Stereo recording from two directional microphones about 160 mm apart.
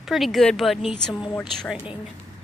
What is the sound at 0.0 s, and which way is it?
Speech, centre (ahead or behind).